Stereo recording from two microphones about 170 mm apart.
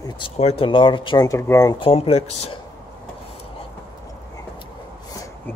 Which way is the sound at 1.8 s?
35° left (ahead or behind).